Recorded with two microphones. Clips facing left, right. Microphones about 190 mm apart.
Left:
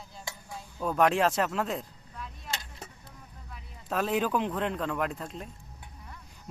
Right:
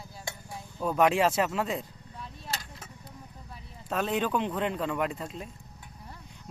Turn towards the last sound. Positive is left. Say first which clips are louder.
# right 1 dB
turn(degrees=0)  # may be behind; listen again after turning